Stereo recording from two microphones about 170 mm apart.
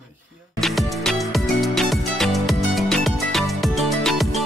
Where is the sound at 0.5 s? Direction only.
Centre (ahead or behind).